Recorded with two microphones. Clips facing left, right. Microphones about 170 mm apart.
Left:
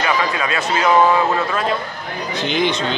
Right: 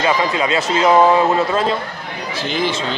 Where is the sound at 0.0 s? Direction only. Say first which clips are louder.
Right 3 dB; 25° right (ahead or behind).